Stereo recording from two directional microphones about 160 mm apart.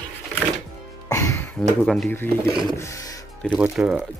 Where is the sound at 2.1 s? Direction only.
15° left (ahead or behind).